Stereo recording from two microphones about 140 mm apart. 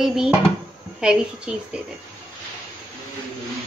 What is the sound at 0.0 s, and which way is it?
A woman's voice, 5° right (ahead or behind).